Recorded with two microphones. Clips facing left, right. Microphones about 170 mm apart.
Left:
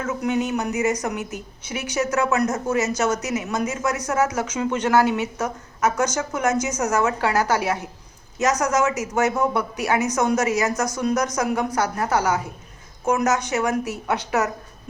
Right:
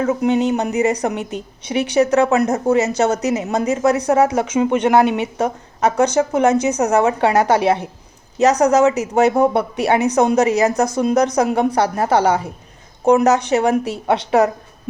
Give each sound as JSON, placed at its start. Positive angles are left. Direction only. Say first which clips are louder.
{"t": 0.1, "sound": "a woman's voice", "louder": "right 3 dB", "side_deg": -25}